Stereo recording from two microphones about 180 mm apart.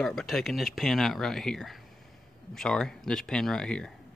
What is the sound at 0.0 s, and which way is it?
Speech, centre (ahead or behind).